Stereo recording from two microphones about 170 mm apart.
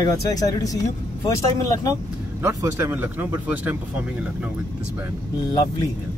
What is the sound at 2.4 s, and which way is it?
Speech, 20° right (ahead or behind).